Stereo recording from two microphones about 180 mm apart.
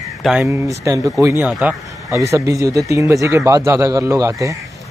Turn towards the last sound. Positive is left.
turn(degrees=-20)  # may be behind; listen again after turning